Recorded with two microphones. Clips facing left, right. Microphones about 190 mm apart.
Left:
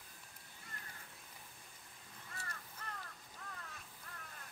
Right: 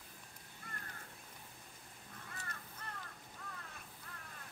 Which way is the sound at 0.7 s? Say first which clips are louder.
Right 4 dB; 55° right (ahead or behind).